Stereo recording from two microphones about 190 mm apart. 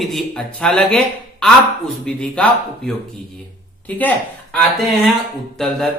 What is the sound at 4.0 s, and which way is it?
Speech, 5° left (ahead or behind).